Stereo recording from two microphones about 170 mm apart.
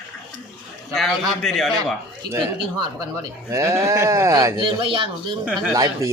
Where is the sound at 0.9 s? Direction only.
Centre (ahead or behind).